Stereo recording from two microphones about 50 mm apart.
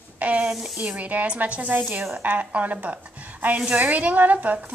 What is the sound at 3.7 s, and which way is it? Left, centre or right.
A woman's voice, right.